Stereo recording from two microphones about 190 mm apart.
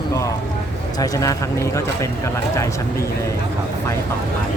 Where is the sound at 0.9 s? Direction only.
20° left (ahead or behind).